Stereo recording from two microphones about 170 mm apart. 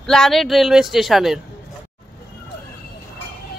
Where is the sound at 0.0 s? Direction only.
5° left (ahead or behind).